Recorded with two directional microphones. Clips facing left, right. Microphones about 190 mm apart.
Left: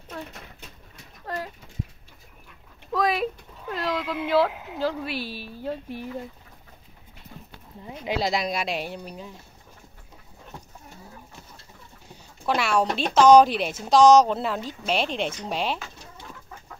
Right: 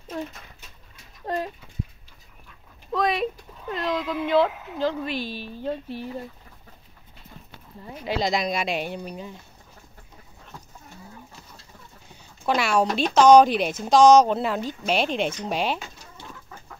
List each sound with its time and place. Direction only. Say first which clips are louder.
1.2 s a sound: right 5 dB; 20° right (ahead or behind)
2.9 s speech: even; centre (ahead or behind)
8.0 s speech: right 1 dB; 5° left (ahead or behind)
12.4 s speech: right 1 dB; centre (ahead or behind)